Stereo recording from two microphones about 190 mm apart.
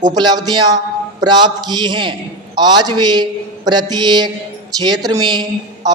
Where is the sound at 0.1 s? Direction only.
20° right (ahead or behind).